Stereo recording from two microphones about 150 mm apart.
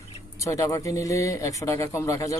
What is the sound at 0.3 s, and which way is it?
Speech, 20° left (ahead or behind).